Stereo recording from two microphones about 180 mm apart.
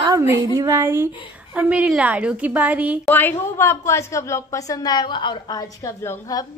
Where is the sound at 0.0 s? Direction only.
20° right (ahead or behind).